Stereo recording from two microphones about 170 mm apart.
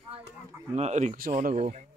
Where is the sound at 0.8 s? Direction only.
40° right (ahead or behind).